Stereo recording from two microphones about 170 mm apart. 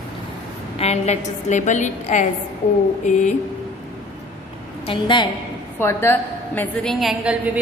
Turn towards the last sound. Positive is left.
turn(degrees=-10)  # may be behind; listen again after turning